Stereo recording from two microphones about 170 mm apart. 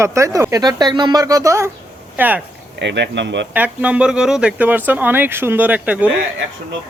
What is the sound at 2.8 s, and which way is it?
Speech, 90° right.